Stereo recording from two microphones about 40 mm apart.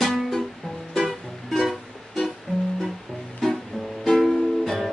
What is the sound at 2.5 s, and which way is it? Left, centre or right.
Music, left.